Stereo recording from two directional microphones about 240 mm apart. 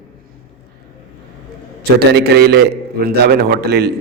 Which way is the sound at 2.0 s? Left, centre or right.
Right.